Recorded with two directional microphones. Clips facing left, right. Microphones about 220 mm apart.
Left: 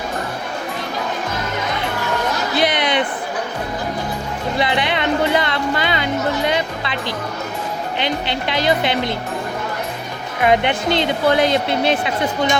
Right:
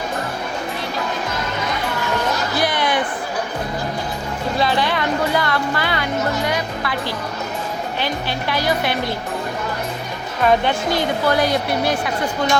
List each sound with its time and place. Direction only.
2.6 s a sound: 20° left (ahead or behind)
4.6 s speech: 20° left (ahead or behind)
6.5 s music: 20° left (ahead or behind)
7.9 s speech: 20° left (ahead or behind)
10.4 s speech: 20° left (ahead or behind)